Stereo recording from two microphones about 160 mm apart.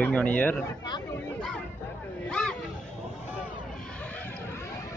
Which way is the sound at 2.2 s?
5° left (ahead or behind).